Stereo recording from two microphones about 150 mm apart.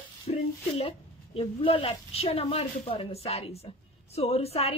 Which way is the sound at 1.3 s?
40° left (ahead or behind).